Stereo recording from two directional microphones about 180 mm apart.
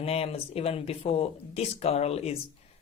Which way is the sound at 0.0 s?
35° left (ahead or behind).